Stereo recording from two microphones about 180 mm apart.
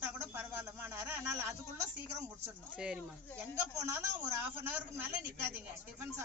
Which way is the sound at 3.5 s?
15° right (ahead or behind).